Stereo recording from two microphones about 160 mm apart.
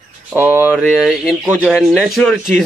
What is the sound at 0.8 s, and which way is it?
Speech, centre (ahead or behind).